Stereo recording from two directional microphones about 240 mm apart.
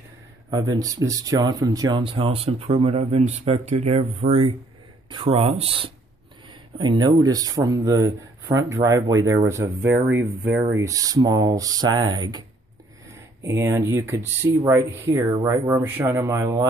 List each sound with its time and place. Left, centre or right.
0.5 s speech: centre